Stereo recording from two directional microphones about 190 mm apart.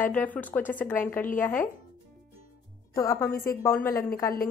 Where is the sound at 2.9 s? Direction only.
15° left (ahead or behind).